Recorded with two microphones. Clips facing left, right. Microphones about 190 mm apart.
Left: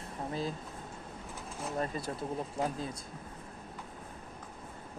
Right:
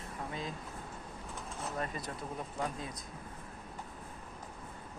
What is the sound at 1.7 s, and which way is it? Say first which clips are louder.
Speech: left 5 dB; 30° left (ahead or behind).